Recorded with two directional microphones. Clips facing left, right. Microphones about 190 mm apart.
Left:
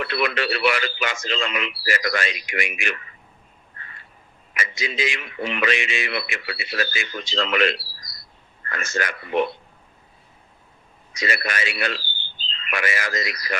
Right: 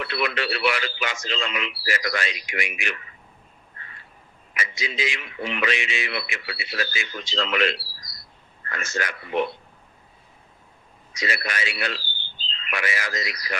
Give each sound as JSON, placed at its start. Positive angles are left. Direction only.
{"t": 0.0, "sound": "a man's voice", "side_deg": 55}
{"t": 4.5, "sound": "a man's voice", "side_deg": 50}
{"t": 11.1, "sound": "a man's voice", "side_deg": 50}